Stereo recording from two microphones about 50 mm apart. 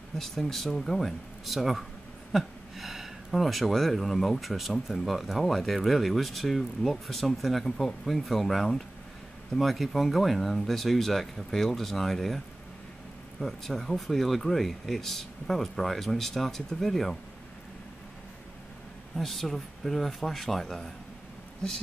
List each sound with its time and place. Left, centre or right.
0.2 s speech: centre
13.4 s speech: centre
19.1 s speech: centre